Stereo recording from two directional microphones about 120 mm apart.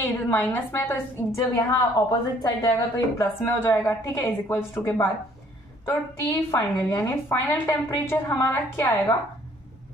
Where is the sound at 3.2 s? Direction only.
20° left (ahead or behind).